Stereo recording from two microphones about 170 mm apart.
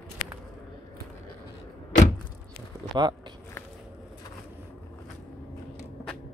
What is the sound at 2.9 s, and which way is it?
Speech, 25° right (ahead or behind).